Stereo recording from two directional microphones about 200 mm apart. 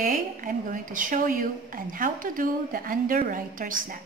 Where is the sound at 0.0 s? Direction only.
40° right (ahead or behind).